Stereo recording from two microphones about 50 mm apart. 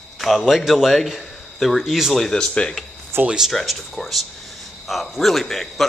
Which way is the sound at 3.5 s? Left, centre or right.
Centre.